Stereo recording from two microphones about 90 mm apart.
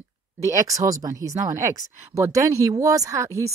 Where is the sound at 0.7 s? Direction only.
40° right (ahead or behind).